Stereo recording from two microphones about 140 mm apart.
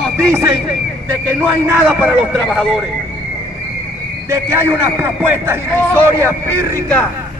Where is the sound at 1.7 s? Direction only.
15° right (ahead or behind).